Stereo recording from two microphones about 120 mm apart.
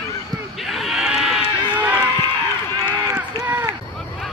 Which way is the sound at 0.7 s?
5° right (ahead or behind).